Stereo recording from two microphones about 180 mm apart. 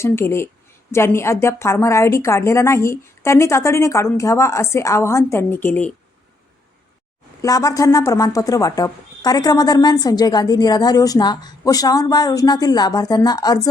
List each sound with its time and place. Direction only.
0.0 s a woman's voice: 15° left (ahead or behind)
7.4 s speech: 20° left (ahead or behind)